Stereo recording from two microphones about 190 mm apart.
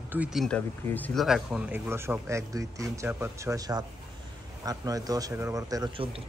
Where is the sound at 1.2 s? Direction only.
5° right (ahead or behind).